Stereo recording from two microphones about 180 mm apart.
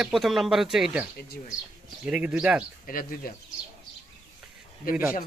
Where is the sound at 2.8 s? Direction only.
50° left (ahead or behind).